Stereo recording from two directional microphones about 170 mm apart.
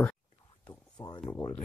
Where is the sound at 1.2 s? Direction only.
20° left (ahead or behind).